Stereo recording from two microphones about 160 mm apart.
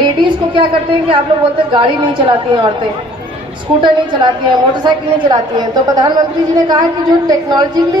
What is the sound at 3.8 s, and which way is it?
A woman's voice, 30° right (ahead or behind).